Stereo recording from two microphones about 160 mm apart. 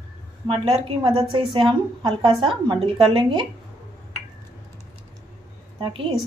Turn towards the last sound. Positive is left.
turn(degrees=-30)  # may be behind; listen again after turning